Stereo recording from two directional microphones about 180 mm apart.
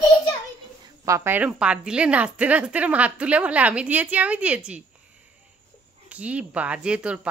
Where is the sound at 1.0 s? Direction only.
15° right (ahead or behind).